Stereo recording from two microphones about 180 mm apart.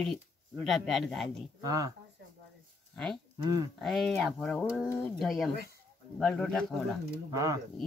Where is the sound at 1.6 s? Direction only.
20° right (ahead or behind).